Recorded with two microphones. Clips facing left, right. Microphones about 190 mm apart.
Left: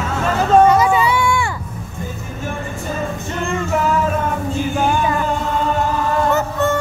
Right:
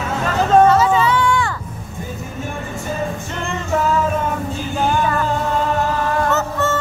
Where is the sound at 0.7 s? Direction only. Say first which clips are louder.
Even; 15° left (ahead or behind).